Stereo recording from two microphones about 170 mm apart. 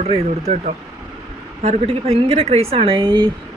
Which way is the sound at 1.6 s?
40° right (ahead or behind).